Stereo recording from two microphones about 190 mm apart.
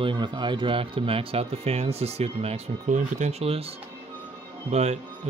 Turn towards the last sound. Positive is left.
turn(degrees=-35)  # may be behind; listen again after turning